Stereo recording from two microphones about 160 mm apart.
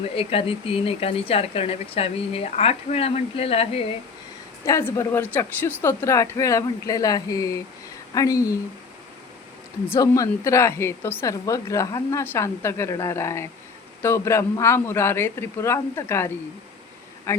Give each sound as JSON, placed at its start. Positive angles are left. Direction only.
{"t": 0.0, "sound": "speech", "side_deg": 35}
{"t": 4.6, "sound": "a woman's voice", "side_deg": 15}
{"t": 9.9, "sound": "a woman's voice", "side_deg": 20}